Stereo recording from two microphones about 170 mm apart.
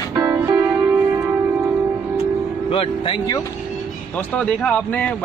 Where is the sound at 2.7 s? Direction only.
30° left (ahead or behind).